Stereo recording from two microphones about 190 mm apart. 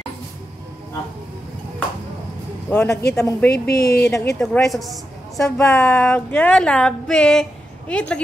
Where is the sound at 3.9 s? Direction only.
5° left (ahead or behind).